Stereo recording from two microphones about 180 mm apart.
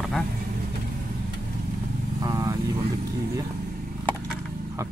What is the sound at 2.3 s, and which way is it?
Vehicle, 20° right (ahead or behind).